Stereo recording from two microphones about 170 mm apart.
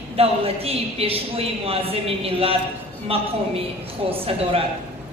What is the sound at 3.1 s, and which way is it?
A woman's voice, 35° right (ahead or behind).